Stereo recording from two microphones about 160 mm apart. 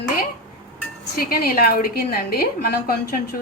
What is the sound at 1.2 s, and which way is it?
A woman's voice, 70° left (ahead or behind).